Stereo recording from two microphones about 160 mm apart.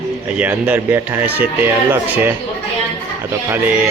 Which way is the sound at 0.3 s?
10° right (ahead or behind).